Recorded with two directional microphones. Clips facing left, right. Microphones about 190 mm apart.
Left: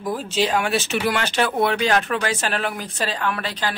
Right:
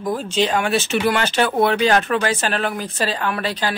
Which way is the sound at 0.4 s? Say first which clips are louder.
Right 2 dB; 5° left (ahead or behind).